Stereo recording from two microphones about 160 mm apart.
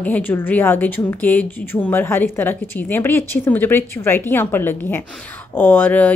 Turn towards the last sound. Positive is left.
turn(degrees=10)  # may be behind; listen again after turning